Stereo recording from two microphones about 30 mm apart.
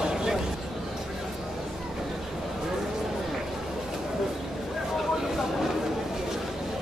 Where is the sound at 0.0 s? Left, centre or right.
Right.